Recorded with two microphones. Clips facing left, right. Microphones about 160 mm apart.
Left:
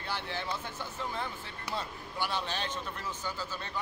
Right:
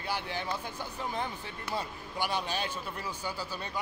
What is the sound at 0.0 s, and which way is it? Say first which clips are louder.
Speech: right 2 dB; 15° right (ahead or behind).